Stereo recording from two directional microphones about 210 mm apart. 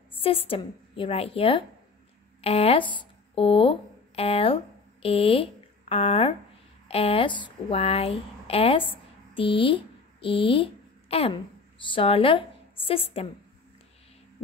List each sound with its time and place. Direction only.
0.2 s a woman's voice: 25° left (ahead or behind)